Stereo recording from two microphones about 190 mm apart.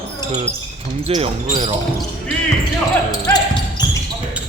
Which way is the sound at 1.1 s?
30° right (ahead or behind).